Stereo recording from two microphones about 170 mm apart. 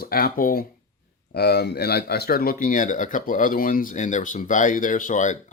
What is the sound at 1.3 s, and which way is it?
Speech, 75° left (ahead or behind).